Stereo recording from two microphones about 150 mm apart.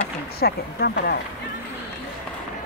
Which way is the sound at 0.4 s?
90° left.